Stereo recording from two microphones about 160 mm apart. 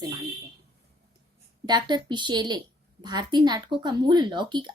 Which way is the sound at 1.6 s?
25° right (ahead or behind).